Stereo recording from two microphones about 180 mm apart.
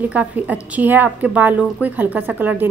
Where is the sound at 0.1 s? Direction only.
10° right (ahead or behind).